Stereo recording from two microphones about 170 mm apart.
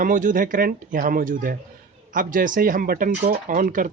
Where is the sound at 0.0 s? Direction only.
50° right (ahead or behind).